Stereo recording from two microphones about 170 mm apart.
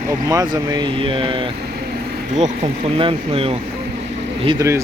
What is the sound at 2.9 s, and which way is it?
Speech, 35° right (ahead or behind).